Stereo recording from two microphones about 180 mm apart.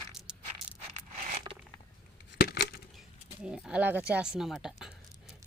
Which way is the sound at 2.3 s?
60° left (ahead or behind).